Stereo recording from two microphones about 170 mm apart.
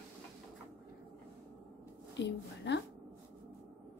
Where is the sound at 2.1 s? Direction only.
90° left.